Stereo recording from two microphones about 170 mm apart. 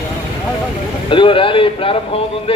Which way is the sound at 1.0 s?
30° left (ahead or behind).